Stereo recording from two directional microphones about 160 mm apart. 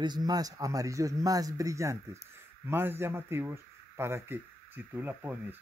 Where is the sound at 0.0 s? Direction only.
25° right (ahead or behind).